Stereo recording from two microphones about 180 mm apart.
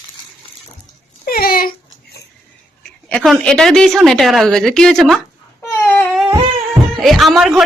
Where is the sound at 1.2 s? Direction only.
55° left (ahead or behind).